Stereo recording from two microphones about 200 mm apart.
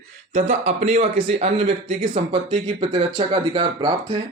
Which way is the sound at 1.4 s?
30° right (ahead or behind).